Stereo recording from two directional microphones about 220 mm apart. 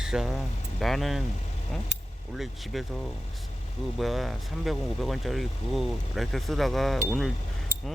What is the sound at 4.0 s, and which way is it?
Speech, centre (ahead or behind).